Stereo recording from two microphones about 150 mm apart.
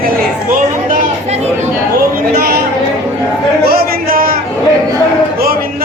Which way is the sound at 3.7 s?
75° right (ahead or behind).